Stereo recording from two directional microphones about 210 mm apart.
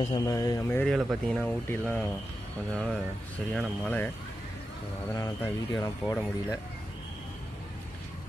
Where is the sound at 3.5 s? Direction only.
5° left (ahead or behind).